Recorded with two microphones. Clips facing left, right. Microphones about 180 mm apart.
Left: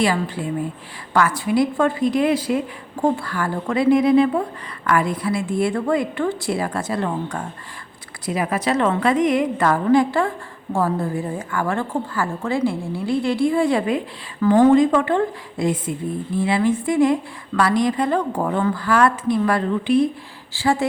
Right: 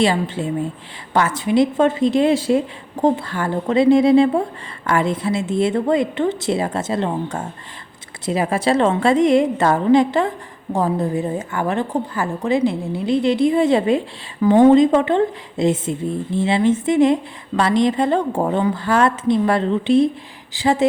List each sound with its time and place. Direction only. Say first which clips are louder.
0.0 s a woman's voice: right 2 dB; 25° right (ahead or behind)